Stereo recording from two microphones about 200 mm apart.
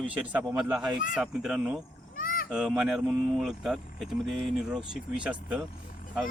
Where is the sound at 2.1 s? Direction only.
45° left (ahead or behind).